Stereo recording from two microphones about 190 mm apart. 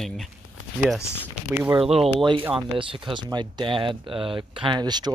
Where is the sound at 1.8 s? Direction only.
30° right (ahead or behind).